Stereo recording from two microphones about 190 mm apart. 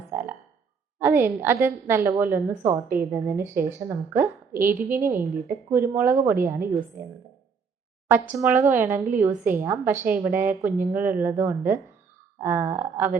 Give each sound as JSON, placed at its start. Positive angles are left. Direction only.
{"t": 0.1, "sound": "frog", "side_deg": -10}
{"t": 0.9, "sound": "a woman's voice", "side_deg": -10}
{"t": 8.3, "sound": "a woman's voice", "side_deg": -10}